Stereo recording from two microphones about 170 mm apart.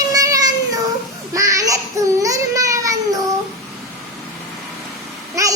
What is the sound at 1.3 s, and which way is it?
Babbling, 20° right (ahead or behind).